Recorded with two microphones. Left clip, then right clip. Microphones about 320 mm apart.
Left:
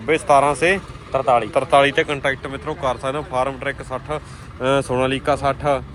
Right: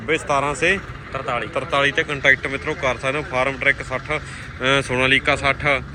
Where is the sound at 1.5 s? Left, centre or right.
Centre.